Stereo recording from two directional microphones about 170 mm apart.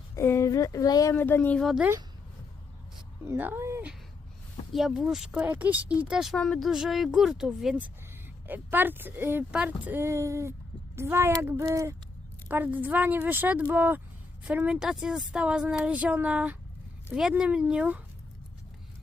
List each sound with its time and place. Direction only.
0.2 s speech: 15° left (ahead or behind); by 1.9 s centre (ahead or behind)
3.2 s a woman's voice: 10° right (ahead or behind)
4.7 s a woman's voice: centre (ahead or behind)